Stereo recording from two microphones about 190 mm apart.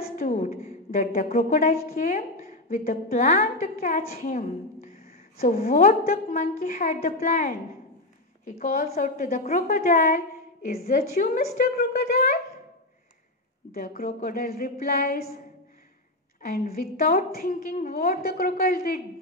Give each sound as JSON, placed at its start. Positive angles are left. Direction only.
{"t": 0.0, "sound": "a sound", "side_deg": 50}
{"t": 1.1, "sound": "a woman's voice", "side_deg": 40}
{"t": 5.6, "sound": "a woman's voice", "side_deg": 50}
{"t": 13.7, "sound": "a woman's voice", "side_deg": 50}
{"t": 16.4, "sound": "a woman's voice", "side_deg": 55}